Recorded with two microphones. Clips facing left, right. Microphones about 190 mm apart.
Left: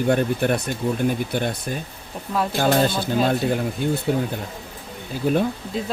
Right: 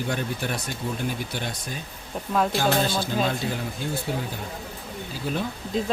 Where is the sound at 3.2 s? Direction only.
55° left (ahead or behind).